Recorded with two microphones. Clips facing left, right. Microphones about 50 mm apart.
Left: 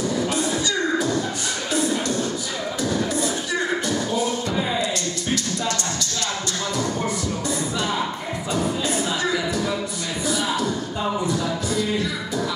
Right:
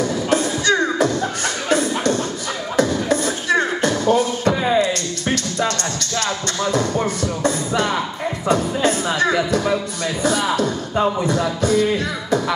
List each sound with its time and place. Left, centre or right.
0.0 s music: right
2.8 s beatboxing: right
7.4 s music: right